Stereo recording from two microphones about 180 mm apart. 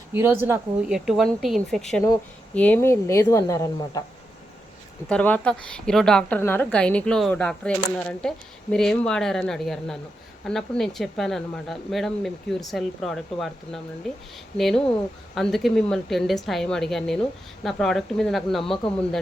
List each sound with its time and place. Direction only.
0.1 s speech: 15° right (ahead or behind)
0.9 s speech: centre (ahead or behind)
2.6 s a woman's voice: 10° left (ahead or behind)
5.0 s speech: 10° left (ahead or behind)